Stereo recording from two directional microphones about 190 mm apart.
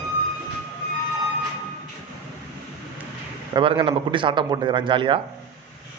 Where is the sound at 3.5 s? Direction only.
30° right (ahead or behind).